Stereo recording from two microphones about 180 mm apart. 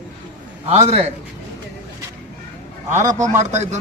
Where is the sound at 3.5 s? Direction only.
40° right (ahead or behind).